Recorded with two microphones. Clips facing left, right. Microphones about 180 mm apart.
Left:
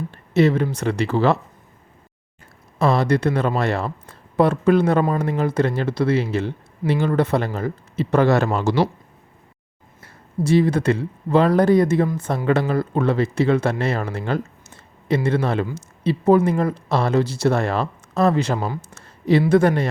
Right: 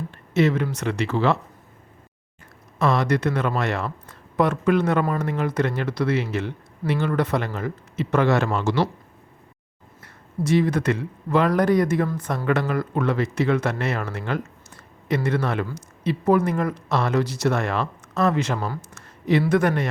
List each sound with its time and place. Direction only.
0.1 s speech: 35° left (ahead or behind)
2.7 s speech: 30° left (ahead or behind)
10.0 s a woman's voice: 30° left (ahead or behind)